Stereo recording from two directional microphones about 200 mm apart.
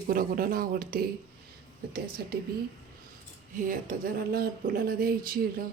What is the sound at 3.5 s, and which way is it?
Speech, 40° right (ahead or behind).